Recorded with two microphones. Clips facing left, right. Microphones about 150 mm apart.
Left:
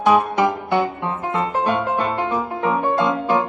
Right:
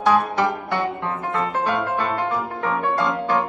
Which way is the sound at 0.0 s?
15° left (ahead or behind).